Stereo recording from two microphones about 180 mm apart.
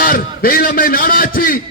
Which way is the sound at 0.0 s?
55° left (ahead or behind).